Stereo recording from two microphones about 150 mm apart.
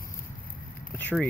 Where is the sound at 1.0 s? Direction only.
10° left (ahead or behind).